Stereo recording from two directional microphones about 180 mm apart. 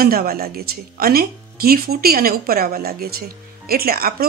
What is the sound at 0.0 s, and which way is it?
Speech, 55° right (ahead or behind).